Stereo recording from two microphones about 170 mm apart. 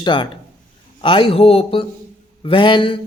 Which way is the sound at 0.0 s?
25° left (ahead or behind).